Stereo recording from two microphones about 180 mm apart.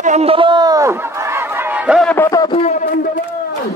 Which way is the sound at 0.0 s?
35° right (ahead or behind).